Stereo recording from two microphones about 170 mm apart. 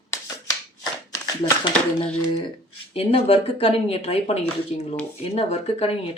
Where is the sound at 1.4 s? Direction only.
30° left (ahead or behind).